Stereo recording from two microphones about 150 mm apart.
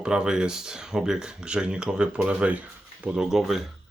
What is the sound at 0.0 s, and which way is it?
Speech, 5° right (ahead or behind).